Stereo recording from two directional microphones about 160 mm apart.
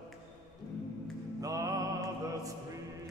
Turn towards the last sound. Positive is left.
turn(degrees=-20)  # may be behind; listen again after turning